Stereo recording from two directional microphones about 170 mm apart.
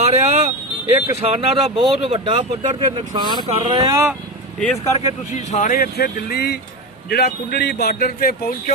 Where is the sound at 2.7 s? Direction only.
25° right (ahead or behind).